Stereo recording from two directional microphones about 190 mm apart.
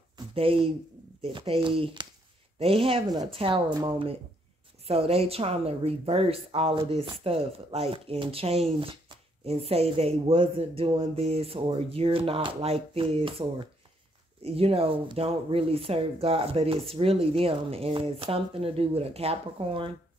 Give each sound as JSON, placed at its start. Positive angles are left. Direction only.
{"t": 0.3, "sound": "a woman's voice", "side_deg": -30}